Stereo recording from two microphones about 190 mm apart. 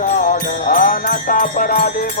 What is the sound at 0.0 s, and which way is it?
Music, 40° left (ahead or behind).